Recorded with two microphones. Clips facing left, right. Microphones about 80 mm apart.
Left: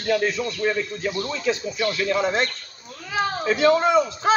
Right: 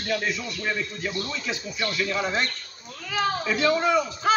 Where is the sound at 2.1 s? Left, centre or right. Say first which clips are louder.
Left 4 dB; left.